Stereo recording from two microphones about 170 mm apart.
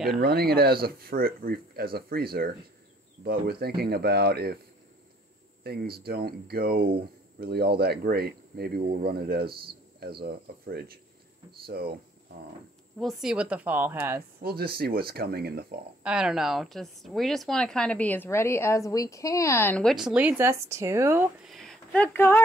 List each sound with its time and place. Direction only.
0.2 s speech: 65° right (ahead or behind)
5.6 s speech: 65° right (ahead or behind)
13.0 s a woman's voice: 5° right (ahead or behind)
14.4 s speech: 65° right (ahead or behind)
16.0 s a woman's voice: 5° right (ahead or behind)
21.5 s a sound: centre (ahead or behind)